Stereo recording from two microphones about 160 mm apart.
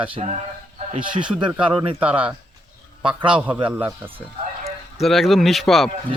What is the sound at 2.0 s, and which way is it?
Speech, 10° right (ahead or behind).